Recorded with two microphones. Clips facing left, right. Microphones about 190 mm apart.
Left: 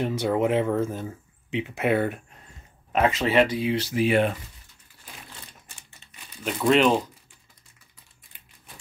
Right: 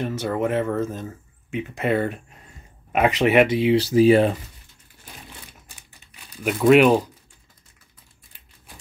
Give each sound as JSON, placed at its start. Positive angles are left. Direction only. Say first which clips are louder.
{"t": 0.0, "sound": "speech", "louder": "left 1 dB", "side_deg": 15}
{"t": 2.9, "sound": "speech", "louder": "right 4 dB", "side_deg": -15}
{"t": 5.9, "sound": "crumpling", "louder": "right 5 dB", "side_deg": -10}